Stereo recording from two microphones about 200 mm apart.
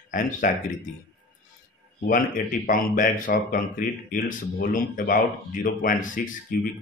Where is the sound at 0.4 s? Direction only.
40° left (ahead or behind).